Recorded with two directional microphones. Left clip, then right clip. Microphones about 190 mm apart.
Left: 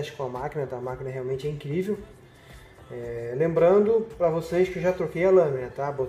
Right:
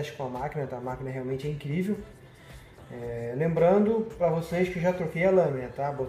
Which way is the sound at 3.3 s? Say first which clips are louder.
Left 3 dB; 35° left (ahead or behind).